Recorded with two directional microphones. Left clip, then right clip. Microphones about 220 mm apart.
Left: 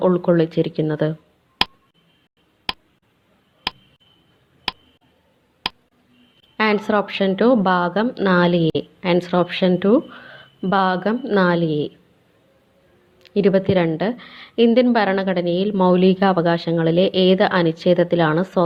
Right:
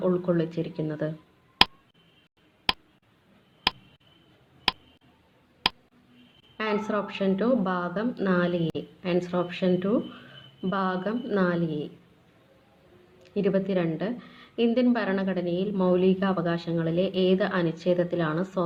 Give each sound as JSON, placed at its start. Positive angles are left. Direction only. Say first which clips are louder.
{"t": 0.0, "sound": "a woman's voice", "louder": "left 9 dB", "side_deg": 30}
{"t": 1.6, "sound": "tick", "louder": "even", "side_deg": 0}
{"t": 2.7, "sound": "a sound", "louder": "even", "side_deg": 0}
{"t": 6.6, "sound": "a woman's voice", "louder": "left 10 dB", "side_deg": 35}
{"t": 13.1, "sound": "a woman's voice", "louder": "left 9 dB", "side_deg": 35}